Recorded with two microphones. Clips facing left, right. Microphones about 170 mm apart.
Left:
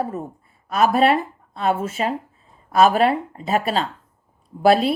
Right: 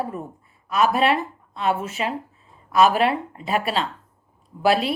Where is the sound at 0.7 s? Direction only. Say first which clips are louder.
Left 3 dB; 45° left (ahead or behind).